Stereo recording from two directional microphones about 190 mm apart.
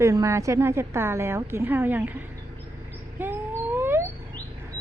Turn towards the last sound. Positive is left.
turn(degrees=-10)  # may be behind; listen again after turning